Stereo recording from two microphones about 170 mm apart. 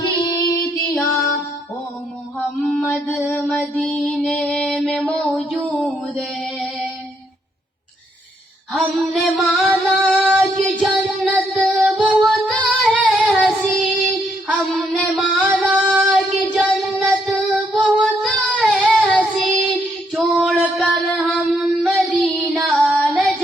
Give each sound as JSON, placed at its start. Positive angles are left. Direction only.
{"t": 0.3, "sound": "music", "side_deg": 20}
{"t": 2.6, "sound": "music", "side_deg": 5}
{"t": 8.7, "sound": "singing", "side_deg": 0}
{"t": 10.6, "sound": "music", "side_deg": 5}
{"t": 11.3, "sound": "music", "side_deg": -10}
{"t": 11.9, "sound": "music", "side_deg": 0}
{"t": 12.1, "sound": "child singing", "side_deg": 0}
{"t": 14.5, "sound": "a sound", "side_deg": 5}
{"t": 15.8, "sound": "child singing", "side_deg": -5}
{"t": 17.1, "sound": "music", "side_deg": -5}
{"t": 18.2, "sound": "singing", "side_deg": 5}
{"t": 18.9, "sound": "child singing", "side_deg": 5}
{"t": 20.1, "sound": "a sound", "side_deg": 0}